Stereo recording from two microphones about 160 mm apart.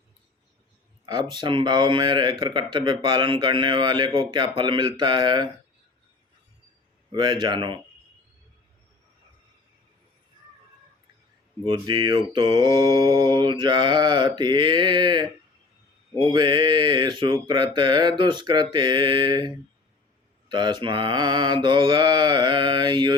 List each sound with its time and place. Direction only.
1.0 s speech: 25° right (ahead or behind)
7.1 s speech: 30° right (ahead or behind)
11.6 s speech: 30° right (ahead or behind)
16.3 s speech: 30° right (ahead or behind)